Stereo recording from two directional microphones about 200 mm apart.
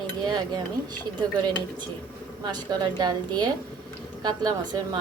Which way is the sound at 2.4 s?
20° right (ahead or behind).